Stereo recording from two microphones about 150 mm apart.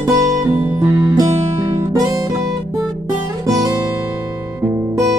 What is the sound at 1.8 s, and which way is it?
Music, 25° right (ahead or behind).